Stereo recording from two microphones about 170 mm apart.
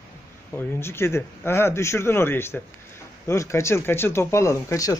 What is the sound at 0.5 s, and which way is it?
A man's voice, 15° left (ahead or behind).